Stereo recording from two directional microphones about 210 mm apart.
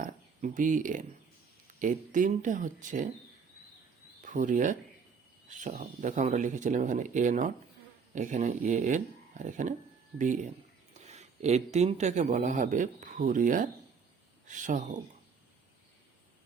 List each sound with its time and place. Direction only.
0.0 s a sound: 40° right (ahead or behind)
1.8 s speech: 40° right (ahead or behind)
4.2 s speech: 40° right (ahead or behind)